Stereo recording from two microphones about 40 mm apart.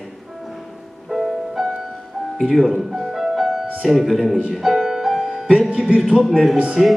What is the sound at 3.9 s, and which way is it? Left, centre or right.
Speech, centre.